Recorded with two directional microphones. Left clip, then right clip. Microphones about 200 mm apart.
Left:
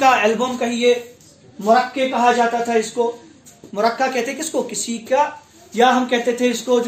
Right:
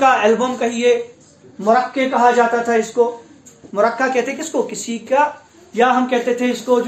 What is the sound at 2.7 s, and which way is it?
Speech, 20° left (ahead or behind).